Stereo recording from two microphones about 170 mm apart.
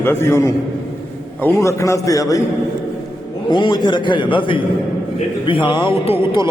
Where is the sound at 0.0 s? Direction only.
15° left (ahead or behind).